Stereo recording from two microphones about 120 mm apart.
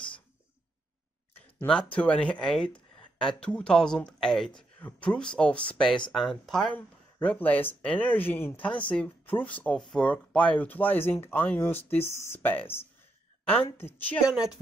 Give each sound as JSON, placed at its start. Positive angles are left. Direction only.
{"t": 1.7, "sound": "speech", "side_deg": 10}
{"t": 13.7, "sound": "speech", "side_deg": 15}
{"t": 14.2, "sound": "speech", "side_deg": -5}